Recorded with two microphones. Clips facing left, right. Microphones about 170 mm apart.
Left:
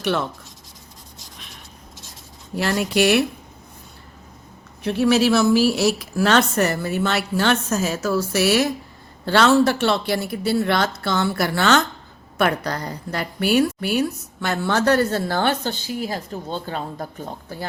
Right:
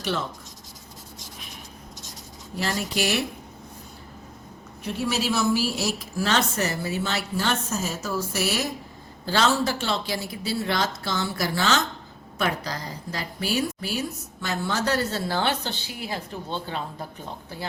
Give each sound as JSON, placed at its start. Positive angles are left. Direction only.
{"t": 0.0, "sound": "speech", "side_deg": 60}
{"t": 2.6, "sound": "a woman's voice", "side_deg": 65}
{"t": 4.8, "sound": "speech", "side_deg": 75}
{"t": 9.2, "sound": "a woman's voice", "side_deg": 65}